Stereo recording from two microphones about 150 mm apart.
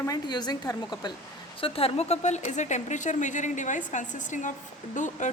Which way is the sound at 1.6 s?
40° left (ahead or behind).